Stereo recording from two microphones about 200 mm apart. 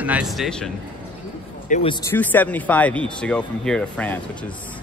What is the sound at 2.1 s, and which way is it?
Speech, 10° left (ahead or behind).